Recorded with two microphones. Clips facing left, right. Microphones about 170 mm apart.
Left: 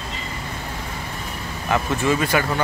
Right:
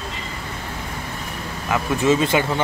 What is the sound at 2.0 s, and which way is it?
Speech, 25° right (ahead or behind).